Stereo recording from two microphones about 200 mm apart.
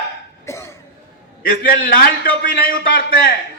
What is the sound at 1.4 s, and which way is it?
A man's voice, 45° left (ahead or behind).